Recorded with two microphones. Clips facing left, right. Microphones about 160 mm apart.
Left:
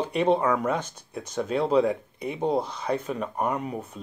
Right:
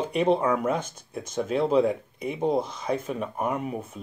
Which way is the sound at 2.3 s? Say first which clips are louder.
Even; 30° left (ahead or behind).